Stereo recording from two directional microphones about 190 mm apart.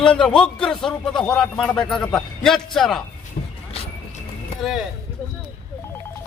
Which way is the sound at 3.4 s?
50° left (ahead or behind).